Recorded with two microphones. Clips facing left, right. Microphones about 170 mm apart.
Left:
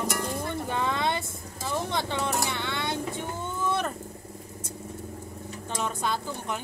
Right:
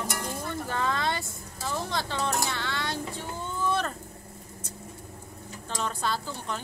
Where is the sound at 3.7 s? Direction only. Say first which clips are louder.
Even; 10° left (ahead or behind).